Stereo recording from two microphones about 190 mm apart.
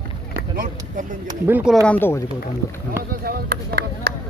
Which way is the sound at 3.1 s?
55° right (ahead or behind).